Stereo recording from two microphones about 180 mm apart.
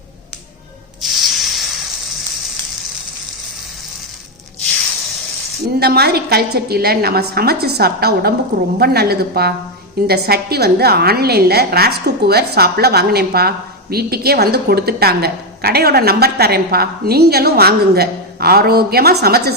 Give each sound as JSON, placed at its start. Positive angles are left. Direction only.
{"t": 1.0, "sound": "spray", "side_deg": 0}
{"t": 5.8, "sound": "a woman's voice", "side_deg": -60}